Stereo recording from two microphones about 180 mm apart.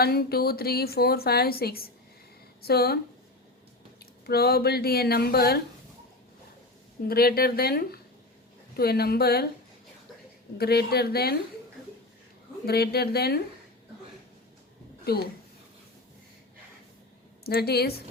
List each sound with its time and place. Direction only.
0.0 s a woman's voice: 60° left (ahead or behind)
4.3 s a woman's voice: 60° left (ahead or behind)
7.1 s a woman's voice: 55° left (ahead or behind)
10.6 s a woman's voice: 60° left (ahead or behind)
12.6 s a woman's voice: 60° left (ahead or behind)
15.1 s a woman's voice: 60° left (ahead or behind)
17.4 s a woman's voice: 60° left (ahead or behind)